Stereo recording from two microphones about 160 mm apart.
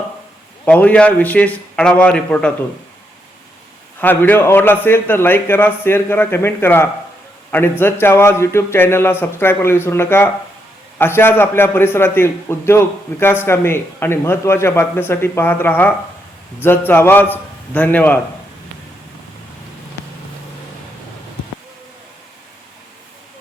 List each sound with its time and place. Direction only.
0.6 s a man's voice: 10° left (ahead or behind)
4.0 s a man's voice: 10° left (ahead or behind)